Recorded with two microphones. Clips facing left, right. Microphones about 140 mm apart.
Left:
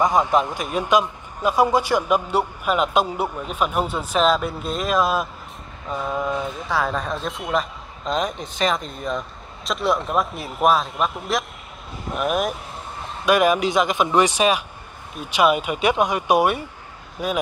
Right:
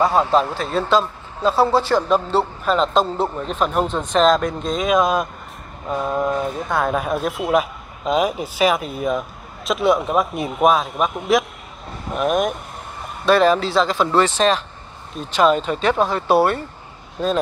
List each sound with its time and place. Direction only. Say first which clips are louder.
0.0 s a man's voice: right 2 dB; 15° left (ahead or behind)
13.2 s speech: right 2 dB; 15° left (ahead or behind)